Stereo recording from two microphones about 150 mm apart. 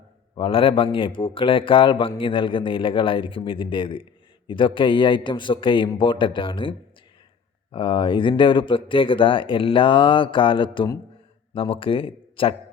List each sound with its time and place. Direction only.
0.3 s a man's voice: 35° left (ahead or behind)